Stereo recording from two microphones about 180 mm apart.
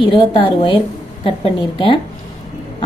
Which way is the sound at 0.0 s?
30° left (ahead or behind).